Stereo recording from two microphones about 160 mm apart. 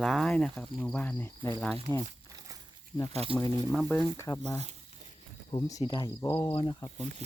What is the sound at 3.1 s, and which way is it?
Speech, 35° right (ahead or behind).